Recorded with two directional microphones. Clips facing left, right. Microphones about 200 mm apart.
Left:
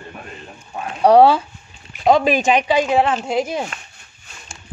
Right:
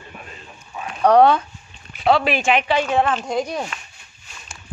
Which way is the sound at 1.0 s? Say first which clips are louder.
Left 3 dB; 35° left (ahead or behind).